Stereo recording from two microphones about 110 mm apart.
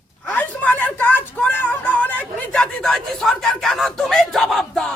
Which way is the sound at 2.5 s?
5° left (ahead or behind).